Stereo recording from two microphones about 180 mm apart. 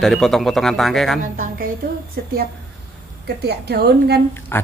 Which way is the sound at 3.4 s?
60° right (ahead or behind).